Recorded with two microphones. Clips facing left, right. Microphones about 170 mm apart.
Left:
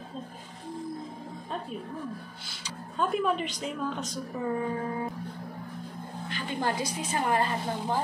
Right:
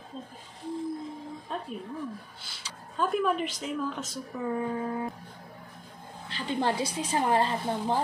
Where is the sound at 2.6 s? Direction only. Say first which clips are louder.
Even; centre (ahead or behind).